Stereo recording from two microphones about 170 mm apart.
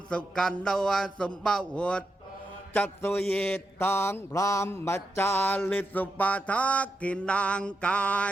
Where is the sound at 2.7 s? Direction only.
10° left (ahead or behind).